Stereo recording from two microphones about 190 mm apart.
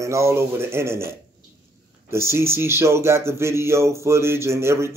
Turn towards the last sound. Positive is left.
turn(degrees=-15)  # may be behind; listen again after turning